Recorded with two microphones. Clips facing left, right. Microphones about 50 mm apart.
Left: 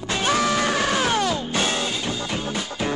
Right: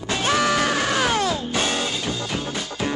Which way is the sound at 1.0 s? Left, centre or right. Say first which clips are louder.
Even; right.